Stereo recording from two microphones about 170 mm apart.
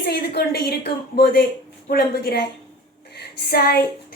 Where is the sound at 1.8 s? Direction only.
65° left (ahead or behind).